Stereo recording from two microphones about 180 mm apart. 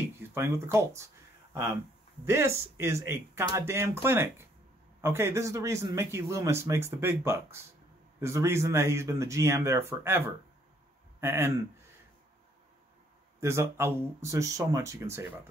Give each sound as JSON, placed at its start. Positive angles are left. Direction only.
{"t": 0.3, "sound": "a man's voice", "side_deg": -15}
{"t": 13.4, "sound": "a man's voice", "side_deg": -15}